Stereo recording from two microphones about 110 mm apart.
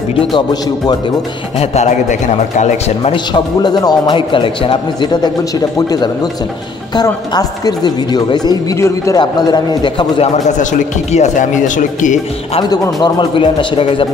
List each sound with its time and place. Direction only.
0.1 s speech: 55° left (ahead or behind)
1.6 s a man's voice: 85° left
3.3 s a man's voice: 40° left (ahead or behind)
5.8 s a man's voice: 35° left (ahead or behind)
8.7 s a man's voice: 25° left (ahead or behind)
9.2 s speech: 40° left (ahead or behind)
10.2 s a man's voice: 90° left
12.6 s speech: 35° left (ahead or behind); by 14.0 s 55° left (ahead or behind)